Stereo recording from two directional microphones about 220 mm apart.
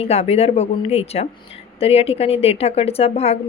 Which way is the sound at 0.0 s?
30° left (ahead or behind).